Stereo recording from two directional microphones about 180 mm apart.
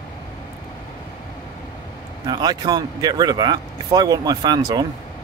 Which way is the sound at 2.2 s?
20° right (ahead or behind).